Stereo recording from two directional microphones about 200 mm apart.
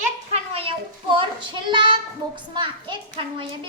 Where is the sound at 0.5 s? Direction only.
25° right (ahead or behind).